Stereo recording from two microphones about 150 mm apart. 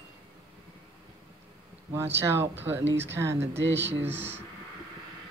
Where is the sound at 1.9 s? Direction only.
15° right (ahead or behind).